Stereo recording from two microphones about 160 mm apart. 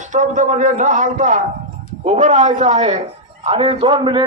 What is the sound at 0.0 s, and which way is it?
A man's voice, 50° right (ahead or behind).